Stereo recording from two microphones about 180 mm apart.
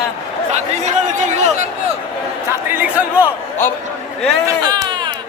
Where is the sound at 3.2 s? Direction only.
10° left (ahead or behind).